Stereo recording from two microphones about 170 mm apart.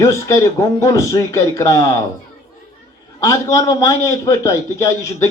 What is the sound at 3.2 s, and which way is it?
A man's voice, 20° left (ahead or behind).